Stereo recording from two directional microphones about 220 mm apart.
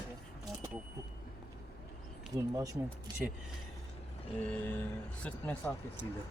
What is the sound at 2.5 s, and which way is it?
Speech, 15° right (ahead or behind).